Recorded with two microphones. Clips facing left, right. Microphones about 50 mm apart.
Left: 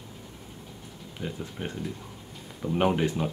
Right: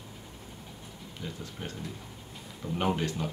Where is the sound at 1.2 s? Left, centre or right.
Left.